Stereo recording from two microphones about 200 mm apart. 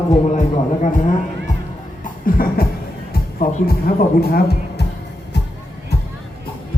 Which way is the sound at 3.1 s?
45° left (ahead or behind).